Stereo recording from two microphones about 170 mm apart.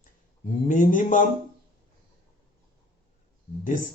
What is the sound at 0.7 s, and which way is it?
Speech, 50° left (ahead or behind).